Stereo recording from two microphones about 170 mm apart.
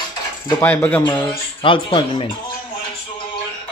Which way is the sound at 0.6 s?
10° left (ahead or behind).